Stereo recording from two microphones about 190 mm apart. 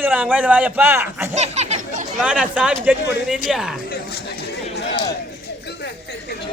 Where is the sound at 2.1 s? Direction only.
5° right (ahead or behind).